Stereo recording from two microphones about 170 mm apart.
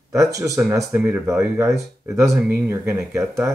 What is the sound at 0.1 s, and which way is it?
Speech, 20° right (ahead or behind).